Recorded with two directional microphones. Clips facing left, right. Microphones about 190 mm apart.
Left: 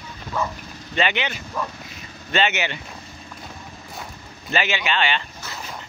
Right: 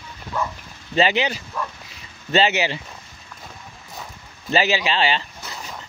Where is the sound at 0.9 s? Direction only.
35° right (ahead or behind).